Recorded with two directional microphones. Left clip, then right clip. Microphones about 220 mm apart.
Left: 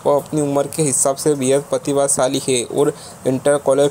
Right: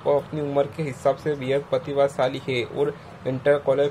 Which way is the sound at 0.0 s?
30° left (ahead or behind).